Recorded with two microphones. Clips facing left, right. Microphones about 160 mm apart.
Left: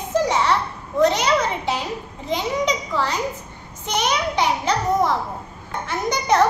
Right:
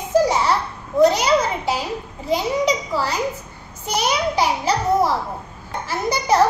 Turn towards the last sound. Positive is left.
turn(degrees=-5)  # may be behind; listen again after turning